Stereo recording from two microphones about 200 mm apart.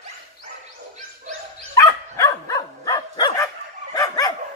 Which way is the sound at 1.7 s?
15° left (ahead or behind).